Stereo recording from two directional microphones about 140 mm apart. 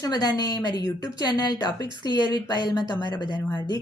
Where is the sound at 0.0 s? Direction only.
30° left (ahead or behind).